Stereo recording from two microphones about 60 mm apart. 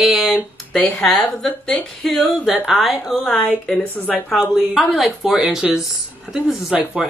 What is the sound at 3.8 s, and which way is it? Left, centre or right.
Speech, left.